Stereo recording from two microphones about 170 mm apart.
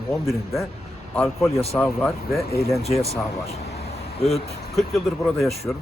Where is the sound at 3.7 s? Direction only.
35° left (ahead or behind).